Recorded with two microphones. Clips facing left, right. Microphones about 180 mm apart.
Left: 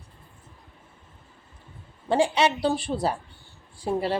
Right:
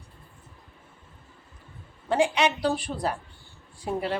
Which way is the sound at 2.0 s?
30° left (ahead or behind).